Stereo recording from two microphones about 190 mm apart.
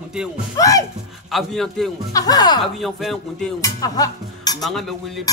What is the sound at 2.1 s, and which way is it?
Music, 20° left (ahead or behind).